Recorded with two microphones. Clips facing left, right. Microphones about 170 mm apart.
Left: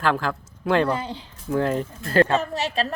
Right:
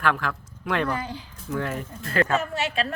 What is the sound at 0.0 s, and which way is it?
Speech, 30° left (ahead or behind).